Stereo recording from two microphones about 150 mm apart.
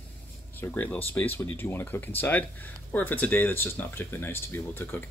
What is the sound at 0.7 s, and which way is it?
Speech, 10° left (ahead or behind).